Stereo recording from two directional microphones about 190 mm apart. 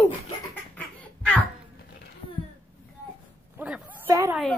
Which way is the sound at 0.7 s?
10° left (ahead or behind).